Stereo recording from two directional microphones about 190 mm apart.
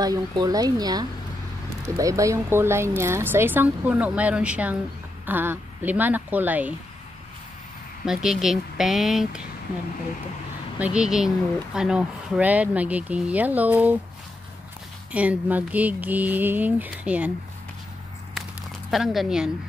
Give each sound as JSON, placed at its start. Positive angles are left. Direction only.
{"t": 0.0, "sound": "speech", "side_deg": -20}
{"t": 8.0, "sound": "speech", "side_deg": -5}
{"t": 10.8, "sound": "speech", "side_deg": -5}
{"t": 15.1, "sound": "speech", "side_deg": -10}
{"t": 18.9, "sound": "speech", "side_deg": 0}